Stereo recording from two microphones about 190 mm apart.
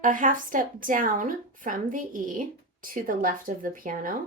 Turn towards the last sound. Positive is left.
turn(degrees=-45)  # may be behind; listen again after turning